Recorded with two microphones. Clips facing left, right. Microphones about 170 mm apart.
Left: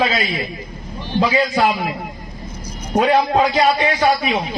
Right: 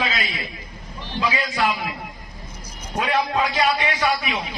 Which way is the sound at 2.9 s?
35° left (ahead or behind).